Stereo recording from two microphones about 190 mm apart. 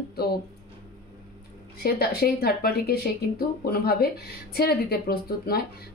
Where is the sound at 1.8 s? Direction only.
55° left (ahead or behind).